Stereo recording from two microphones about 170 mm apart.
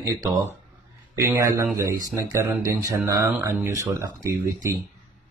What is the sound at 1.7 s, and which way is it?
Speech, 55° right (ahead or behind).